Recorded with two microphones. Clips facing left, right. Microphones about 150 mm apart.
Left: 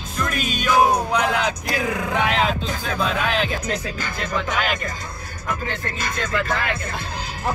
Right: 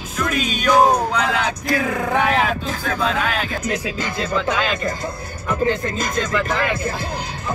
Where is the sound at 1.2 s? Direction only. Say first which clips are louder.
Right 1 dB; 20° left (ahead or behind).